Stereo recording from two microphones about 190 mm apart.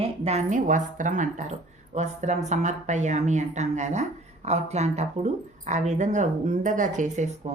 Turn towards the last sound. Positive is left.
turn(degrees=-40)  # may be behind; listen again after turning